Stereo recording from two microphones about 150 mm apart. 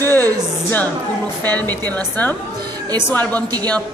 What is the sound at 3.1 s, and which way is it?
Speech, 10° left (ahead or behind).